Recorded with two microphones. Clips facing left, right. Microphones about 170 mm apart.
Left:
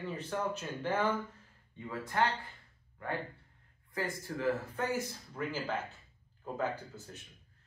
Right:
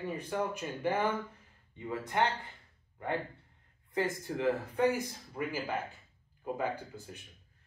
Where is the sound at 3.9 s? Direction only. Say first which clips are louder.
Right 4 dB; 20° right (ahead or behind).